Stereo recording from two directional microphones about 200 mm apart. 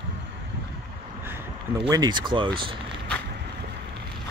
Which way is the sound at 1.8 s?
20° right (ahead or behind).